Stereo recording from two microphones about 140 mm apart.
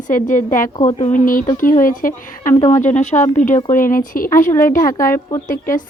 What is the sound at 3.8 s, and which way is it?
Speech, 90° left.